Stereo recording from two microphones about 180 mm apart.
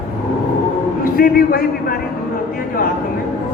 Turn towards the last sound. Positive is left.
turn(degrees=55)  # may be behind; listen again after turning